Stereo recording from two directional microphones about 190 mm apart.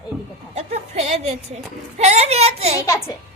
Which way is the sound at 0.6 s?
35° right (ahead or behind).